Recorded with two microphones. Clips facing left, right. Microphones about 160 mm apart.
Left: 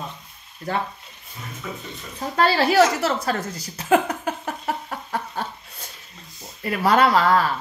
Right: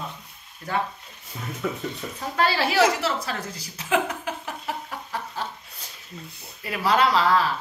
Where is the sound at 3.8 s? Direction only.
45° left (ahead or behind).